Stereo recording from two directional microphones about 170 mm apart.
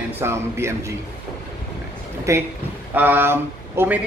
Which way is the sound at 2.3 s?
15° right (ahead or behind).